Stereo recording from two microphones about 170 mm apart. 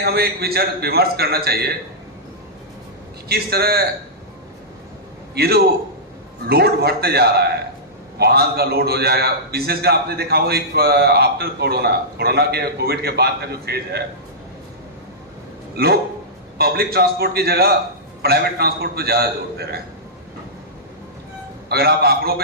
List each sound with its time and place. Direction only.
0.0 s a man's voice: 65° right (ahead or behind)
3.2 s a man's voice: 65° right (ahead or behind)
5.3 s a man's voice: 65° right (ahead or behind)
15.8 s a man's voice: 65° right (ahead or behind)
21.7 s a man's voice: 65° right (ahead or behind)